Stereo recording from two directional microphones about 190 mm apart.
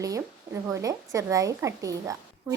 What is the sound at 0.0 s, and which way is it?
A woman's voice, 15° right (ahead or behind).